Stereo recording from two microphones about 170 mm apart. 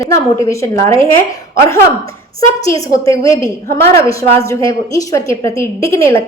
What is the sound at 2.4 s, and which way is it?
A woman's voice, 20° left (ahead or behind).